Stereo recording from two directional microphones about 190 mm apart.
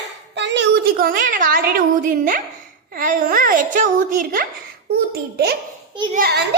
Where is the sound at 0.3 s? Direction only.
70° right (ahead or behind).